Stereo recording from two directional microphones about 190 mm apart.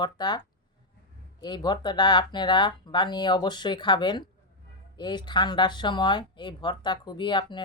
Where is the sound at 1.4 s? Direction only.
20° left (ahead or behind).